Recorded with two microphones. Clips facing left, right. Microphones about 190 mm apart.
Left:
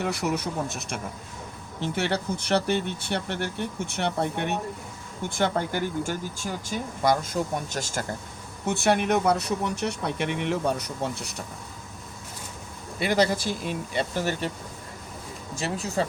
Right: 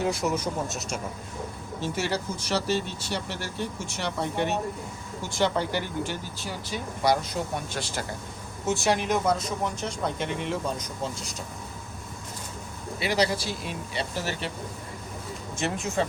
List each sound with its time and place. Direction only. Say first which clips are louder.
0.0 s speech: right 1 dB; 65° left (ahead or behind); by 8.0 s 45° left (ahead or behind)
8.6 s speech: left 2 dB; 60° left (ahead or behind)
13.0 s speech: left 2 dB; 50° left (ahead or behind)
15.5 s speech: even; 35° left (ahead or behind)